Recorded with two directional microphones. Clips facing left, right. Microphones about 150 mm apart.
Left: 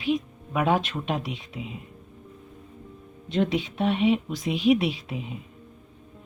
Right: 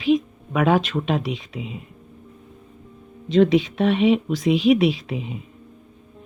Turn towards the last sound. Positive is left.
turn(degrees=-90)